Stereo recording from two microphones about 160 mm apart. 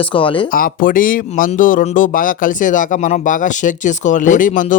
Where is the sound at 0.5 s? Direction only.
60° left (ahead or behind).